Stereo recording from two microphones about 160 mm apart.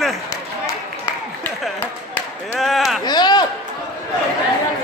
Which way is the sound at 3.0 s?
25° left (ahead or behind).